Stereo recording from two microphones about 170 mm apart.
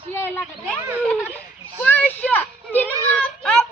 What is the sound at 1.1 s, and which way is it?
Children playing, 5° left (ahead or behind).